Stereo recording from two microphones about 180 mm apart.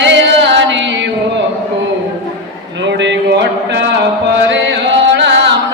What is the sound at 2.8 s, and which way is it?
Mantra, 80° right.